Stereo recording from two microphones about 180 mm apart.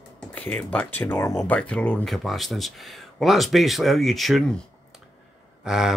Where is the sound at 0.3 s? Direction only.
5° left (ahead or behind).